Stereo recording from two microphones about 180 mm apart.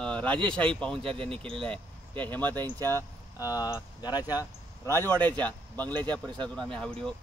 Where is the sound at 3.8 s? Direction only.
10° right (ahead or behind).